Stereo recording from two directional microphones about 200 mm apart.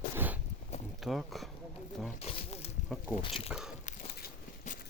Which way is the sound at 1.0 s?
Centre (ahead or behind).